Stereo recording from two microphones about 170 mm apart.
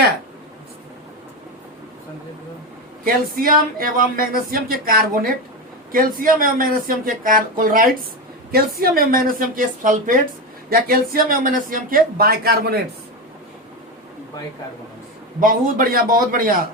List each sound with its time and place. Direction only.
3.0 s speech: 55° right (ahead or behind)
15.4 s speech: 55° right (ahead or behind)